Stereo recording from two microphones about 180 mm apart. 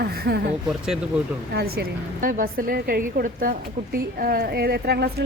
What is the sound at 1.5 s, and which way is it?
A woman's voice, 60° right (ahead or behind).